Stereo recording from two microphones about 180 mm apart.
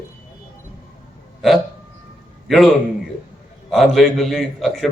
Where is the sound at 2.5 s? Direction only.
Centre (ahead or behind).